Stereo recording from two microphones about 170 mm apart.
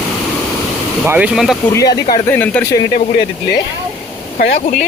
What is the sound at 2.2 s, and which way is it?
Speech, 10° left (ahead or behind).